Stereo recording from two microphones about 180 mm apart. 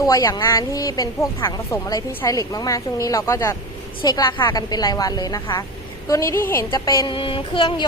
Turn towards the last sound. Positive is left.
turn(degrees=25)  # may be behind; listen again after turning